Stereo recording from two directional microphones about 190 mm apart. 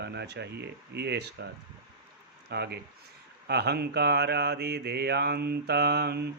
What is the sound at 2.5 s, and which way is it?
Speech, 60° right (ahead or behind).